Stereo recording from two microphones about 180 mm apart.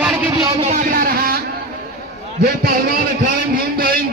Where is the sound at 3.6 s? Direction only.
55° right (ahead or behind).